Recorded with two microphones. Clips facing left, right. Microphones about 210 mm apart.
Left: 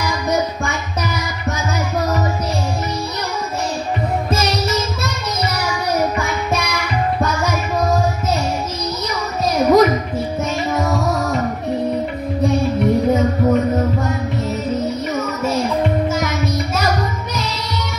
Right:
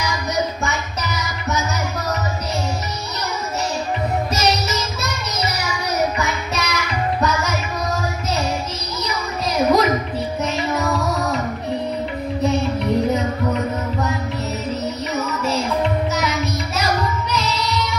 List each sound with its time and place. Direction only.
0.0 s music: 55° left (ahead or behind)
4.3 s music: 55° left (ahead or behind)
9.4 s a sound: 50° left (ahead or behind)
10.4 s music: 50° left (ahead or behind)
15.1 s music: 50° left (ahead or behind)